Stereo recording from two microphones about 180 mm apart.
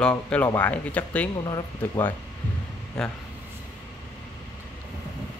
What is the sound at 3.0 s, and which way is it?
Speech, 5° left (ahead or behind).